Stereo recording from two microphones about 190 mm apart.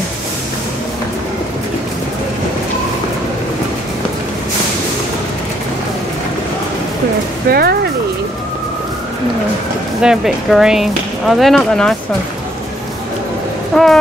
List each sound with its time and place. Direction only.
7.4 s speech: 55° right (ahead or behind)
10.0 s speech: 5° right (ahead or behind)
13.7 s speech: centre (ahead or behind)